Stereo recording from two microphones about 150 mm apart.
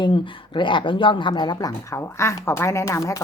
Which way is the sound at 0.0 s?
35° left (ahead or behind).